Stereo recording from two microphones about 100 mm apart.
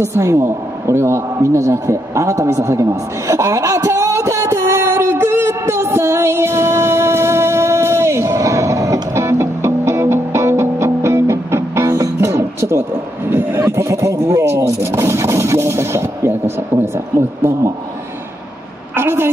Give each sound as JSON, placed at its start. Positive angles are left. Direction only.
{"t": 0.0, "sound": "a sound", "side_deg": -30}
{"t": 13.3, "sound": "speech", "side_deg": -25}
{"t": 18.9, "sound": "a woman's voice", "side_deg": -25}